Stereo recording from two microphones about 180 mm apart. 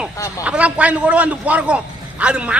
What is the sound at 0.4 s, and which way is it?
A man's voice, 5° right (ahead or behind).